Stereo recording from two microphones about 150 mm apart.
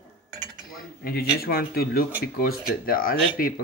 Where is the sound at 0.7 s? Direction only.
85° left.